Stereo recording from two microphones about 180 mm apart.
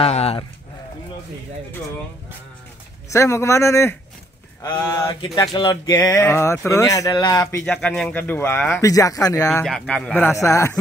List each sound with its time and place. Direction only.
0.0 s speech: 35° left (ahead or behind)
3.1 s speech: 15° left (ahead or behind)
7.6 s speech: 5° left (ahead or behind)
9.7 s speech: 5° left (ahead or behind)